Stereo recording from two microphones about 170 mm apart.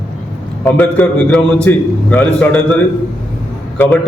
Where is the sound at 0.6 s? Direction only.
10° left (ahead or behind).